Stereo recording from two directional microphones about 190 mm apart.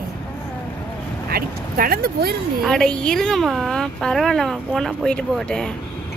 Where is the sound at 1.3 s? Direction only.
50° right (ahead or behind).